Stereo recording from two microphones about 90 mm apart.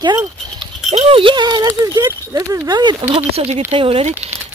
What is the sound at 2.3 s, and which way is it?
Speech, 40° right (ahead or behind).